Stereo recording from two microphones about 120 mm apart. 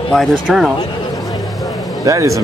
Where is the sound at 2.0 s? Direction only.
25° right (ahead or behind).